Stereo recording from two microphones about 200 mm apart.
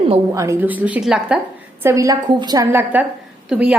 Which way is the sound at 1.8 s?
15° right (ahead or behind).